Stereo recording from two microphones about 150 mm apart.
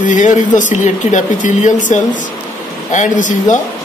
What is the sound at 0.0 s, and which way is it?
Speech, 55° left (ahead or behind).